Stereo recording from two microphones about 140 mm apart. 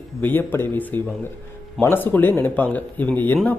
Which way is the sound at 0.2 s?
15° left (ahead or behind).